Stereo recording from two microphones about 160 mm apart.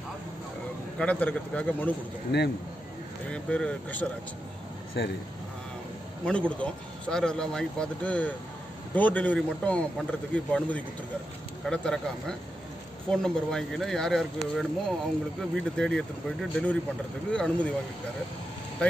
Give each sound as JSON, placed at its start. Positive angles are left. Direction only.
{"t": 0.9, "sound": "speech", "side_deg": 10}
{"t": 2.3, "sound": "speech", "side_deg": 90}
{"t": 3.3, "sound": "speech", "side_deg": 5}
{"t": 5.0, "sound": "speech", "side_deg": 90}
{"t": 6.2, "sound": "speech", "side_deg": 5}